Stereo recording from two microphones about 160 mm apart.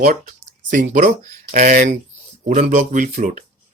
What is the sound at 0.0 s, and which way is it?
Speech, 60° right (ahead or behind).